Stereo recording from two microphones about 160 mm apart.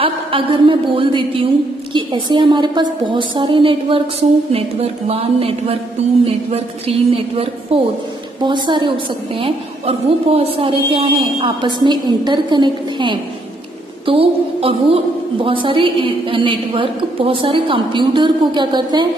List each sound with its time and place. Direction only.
0.0 s a woman's voice: 35° right (ahead or behind)